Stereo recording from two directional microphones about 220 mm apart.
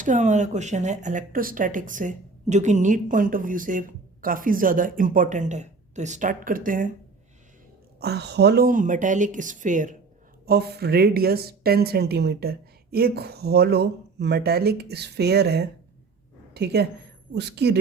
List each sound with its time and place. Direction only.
0.0 s speech: 35° right (ahead or behind)
7.9 s speech: 45° right (ahead or behind)
10.4 s a woman's voice: 45° right (ahead or behind)